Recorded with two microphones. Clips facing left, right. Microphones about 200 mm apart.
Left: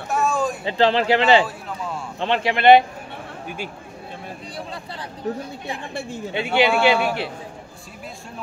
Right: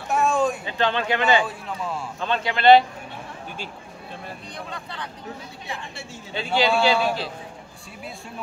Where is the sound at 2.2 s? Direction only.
25° left (ahead or behind).